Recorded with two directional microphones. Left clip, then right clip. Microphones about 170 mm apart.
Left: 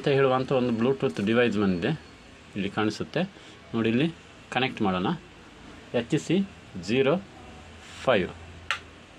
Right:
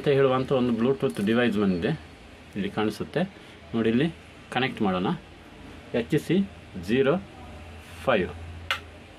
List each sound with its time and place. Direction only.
0.0 s speech: 5° left (ahead or behind)